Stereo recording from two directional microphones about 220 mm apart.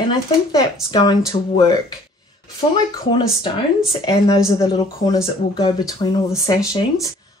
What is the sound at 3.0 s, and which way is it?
Speech, 20° left (ahead or behind).